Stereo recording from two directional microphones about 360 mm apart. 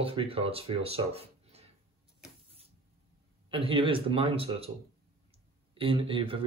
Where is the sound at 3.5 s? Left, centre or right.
Centre.